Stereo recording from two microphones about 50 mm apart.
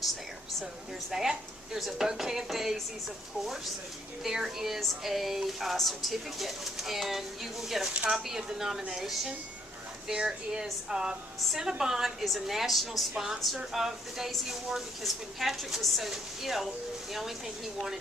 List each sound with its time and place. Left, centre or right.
1.1 s speech: centre
4.2 s a woman's voice: centre
7.9 s speech: centre
8.1 s speech: centre
10.1 s a woman's voice: centre